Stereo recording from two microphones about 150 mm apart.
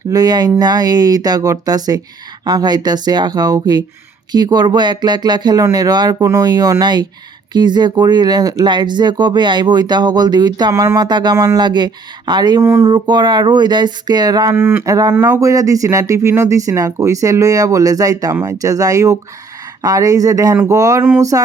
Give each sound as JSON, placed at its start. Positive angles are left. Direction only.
{"t": 0.1, "sound": "speech", "side_deg": -25}
{"t": 12.6, "sound": "speech", "side_deg": -15}
{"t": 12.9, "sound": "speech", "side_deg": -30}
{"t": 14.5, "sound": "speech", "side_deg": -15}